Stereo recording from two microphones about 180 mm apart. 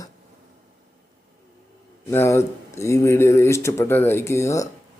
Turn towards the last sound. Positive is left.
turn(degrees=15)  # may be behind; listen again after turning